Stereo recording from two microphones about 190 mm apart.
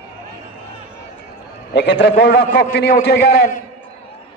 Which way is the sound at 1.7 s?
65° left (ahead or behind).